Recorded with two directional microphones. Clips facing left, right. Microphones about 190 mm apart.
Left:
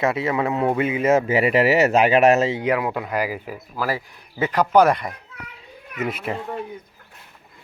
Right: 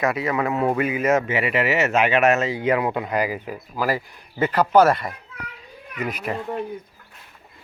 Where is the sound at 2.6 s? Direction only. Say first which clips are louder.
Right 1 dB; 10° left (ahead or behind).